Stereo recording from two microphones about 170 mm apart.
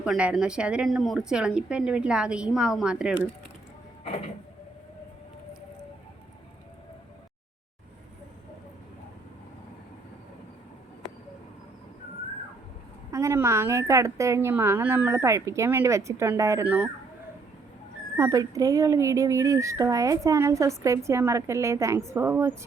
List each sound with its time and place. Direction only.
0.0 s speech: 5° right (ahead or behind)
13.1 s speech: 15° right (ahead or behind)
18.2 s speech: 20° right (ahead or behind)